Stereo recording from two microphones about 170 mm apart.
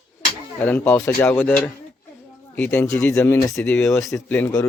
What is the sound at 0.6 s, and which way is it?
Speech, 10° left (ahead or behind).